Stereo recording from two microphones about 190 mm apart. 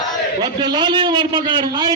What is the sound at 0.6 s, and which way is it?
A man's voice, 25° right (ahead or behind).